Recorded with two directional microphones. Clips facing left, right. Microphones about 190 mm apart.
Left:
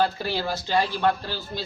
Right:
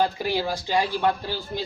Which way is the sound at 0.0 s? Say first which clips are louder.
Right 1 dB; 15° right (ahead or behind).